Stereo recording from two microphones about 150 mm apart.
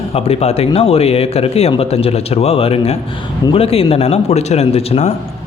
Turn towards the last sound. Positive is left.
turn(degrees=45)  # may be behind; listen again after turning